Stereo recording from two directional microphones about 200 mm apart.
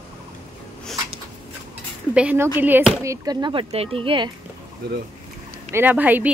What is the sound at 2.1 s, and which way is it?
Speech, 5° right (ahead or behind).